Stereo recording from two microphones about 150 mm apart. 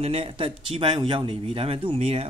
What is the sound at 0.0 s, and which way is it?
Speech, 40° right (ahead or behind).